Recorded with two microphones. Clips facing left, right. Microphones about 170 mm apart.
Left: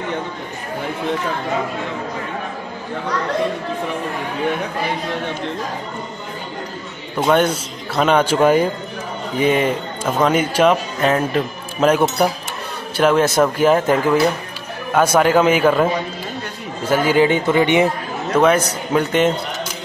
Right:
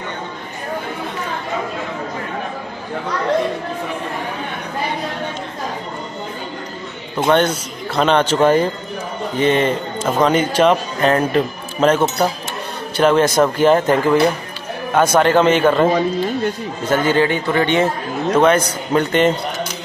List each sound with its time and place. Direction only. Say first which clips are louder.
7.2 s speech: even; 10° left (ahead or behind)
18.3 s speech: right 1 dB; 5° left (ahead or behind)